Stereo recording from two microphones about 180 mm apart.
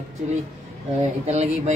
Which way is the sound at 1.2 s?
35° right (ahead or behind).